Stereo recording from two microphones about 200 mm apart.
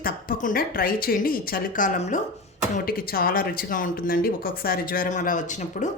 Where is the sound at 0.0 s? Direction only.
45° left (ahead or behind).